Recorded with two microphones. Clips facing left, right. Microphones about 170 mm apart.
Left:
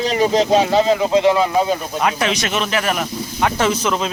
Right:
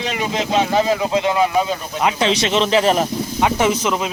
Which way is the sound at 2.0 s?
25° right (ahead or behind).